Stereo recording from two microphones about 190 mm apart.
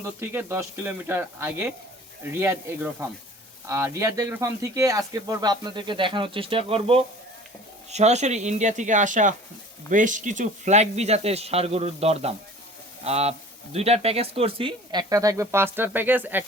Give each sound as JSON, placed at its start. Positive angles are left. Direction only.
{"t": 0.2, "sound": "speech", "side_deg": -15}